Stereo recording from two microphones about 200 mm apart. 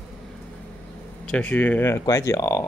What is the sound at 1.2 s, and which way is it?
Speech, 5° left (ahead or behind).